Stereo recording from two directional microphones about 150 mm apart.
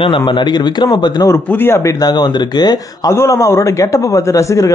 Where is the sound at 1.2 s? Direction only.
15° left (ahead or behind).